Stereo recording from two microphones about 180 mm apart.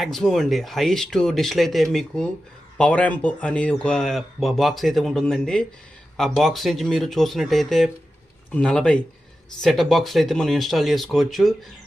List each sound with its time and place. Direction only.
0.0 s speech: centre (ahead or behind)